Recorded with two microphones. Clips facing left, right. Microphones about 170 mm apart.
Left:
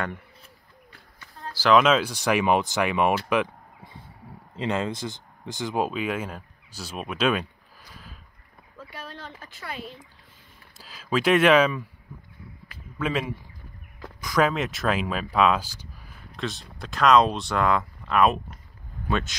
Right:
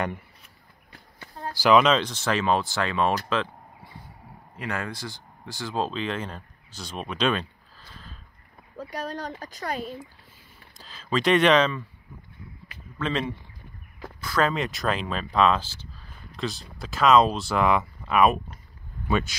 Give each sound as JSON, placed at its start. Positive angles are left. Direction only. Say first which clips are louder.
{"t": 1.5, "sound": "speech", "louder": "right 1 dB", "side_deg": -10}
{"t": 1.8, "sound": "speech", "louder": "left 1 dB", "side_deg": 5}
{"t": 3.3, "sound": "a sound", "louder": "left 3 dB", "side_deg": 15}
{"t": 4.6, "sound": "speech", "louder": "left 5 dB", "side_deg": 20}
{"t": 8.7, "sound": "speech", "louder": "right 8 dB", "side_deg": -40}
{"t": 10.8, "sound": "speech", "louder": "left 1 dB", "side_deg": 5}
{"t": 13.0, "sound": "speech", "louder": "left 1 dB", "side_deg": 10}
{"t": 14.5, "sound": "speech", "louder": "left 1 dB", "side_deg": 0}
{"t": 16.3, "sound": "speech", "louder": "right 1 dB", "side_deg": 0}